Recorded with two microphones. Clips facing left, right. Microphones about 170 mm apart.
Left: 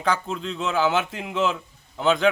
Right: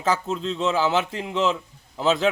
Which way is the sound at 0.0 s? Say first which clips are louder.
Right 1 dB; centre (ahead or behind).